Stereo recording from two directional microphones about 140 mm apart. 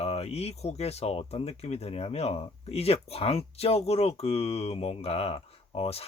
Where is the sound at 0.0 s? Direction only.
45° left (ahead or behind).